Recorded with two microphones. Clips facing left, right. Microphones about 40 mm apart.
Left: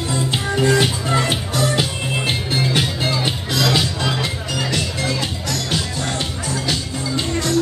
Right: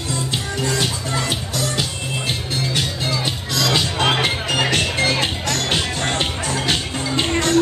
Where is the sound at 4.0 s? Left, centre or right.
Right.